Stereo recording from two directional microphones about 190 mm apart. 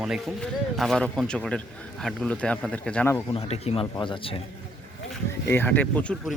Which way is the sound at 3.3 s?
30° left (ahead or behind).